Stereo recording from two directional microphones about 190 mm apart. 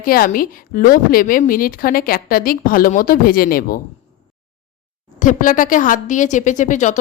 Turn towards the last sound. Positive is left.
turn(degrees=40)  # may be behind; listen again after turning